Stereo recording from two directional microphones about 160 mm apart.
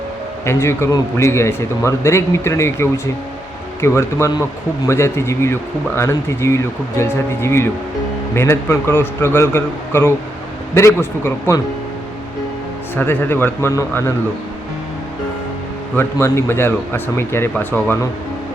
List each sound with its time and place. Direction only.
0.4 s speech: 15° left (ahead or behind)
13.0 s speech: 10° left (ahead or behind)
16.0 s speech: 15° left (ahead or behind)